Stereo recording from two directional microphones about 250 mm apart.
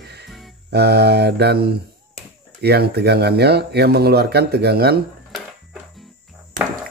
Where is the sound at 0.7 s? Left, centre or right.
Right.